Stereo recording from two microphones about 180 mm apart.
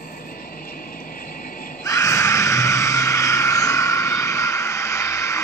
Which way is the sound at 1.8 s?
15° left (ahead or behind).